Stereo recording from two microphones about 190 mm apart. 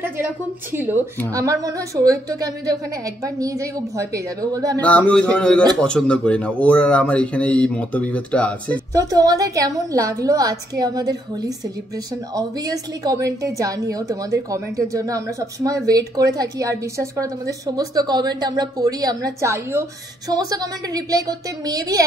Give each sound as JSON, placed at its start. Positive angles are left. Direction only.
{"t": 0.7, "sound": "a woman's voice", "side_deg": -10}
{"t": 4.7, "sound": "speech", "side_deg": 10}
{"t": 8.9, "sound": "a woman's voice", "side_deg": -20}